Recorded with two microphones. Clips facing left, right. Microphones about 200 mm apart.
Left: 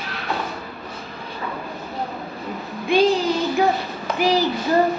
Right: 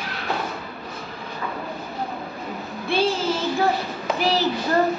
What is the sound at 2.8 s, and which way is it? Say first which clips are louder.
Child singing: left 5 dB; 15° left (ahead or behind).